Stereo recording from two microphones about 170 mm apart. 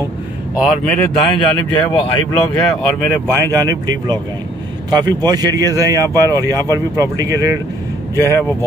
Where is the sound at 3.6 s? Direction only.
25° right (ahead or behind).